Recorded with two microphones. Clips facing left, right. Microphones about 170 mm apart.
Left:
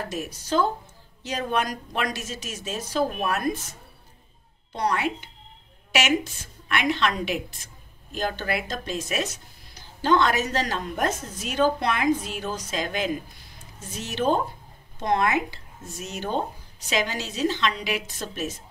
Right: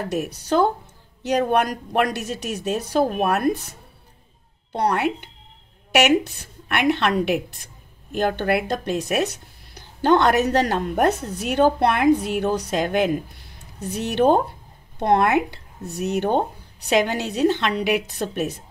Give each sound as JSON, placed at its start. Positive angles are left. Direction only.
{"t": 0.1, "sound": "speech", "side_deg": -65}
{"t": 4.7, "sound": "speech", "side_deg": -60}